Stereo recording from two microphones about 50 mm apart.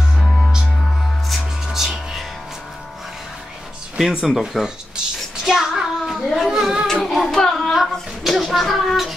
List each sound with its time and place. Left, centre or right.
1.3 s music: centre
4.0 s a child's voice: centre
7.0 s child singing: centre
7.7 s speech: centre